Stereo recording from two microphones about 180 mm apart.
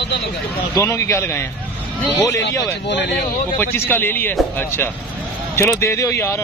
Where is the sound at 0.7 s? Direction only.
15° left (ahead or behind).